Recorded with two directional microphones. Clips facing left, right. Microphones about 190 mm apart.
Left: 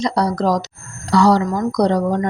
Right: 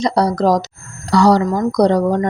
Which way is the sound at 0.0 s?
35° right (ahead or behind).